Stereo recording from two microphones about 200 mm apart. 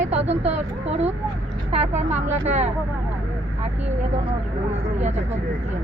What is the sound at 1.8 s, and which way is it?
Speech, 35° right (ahead or behind).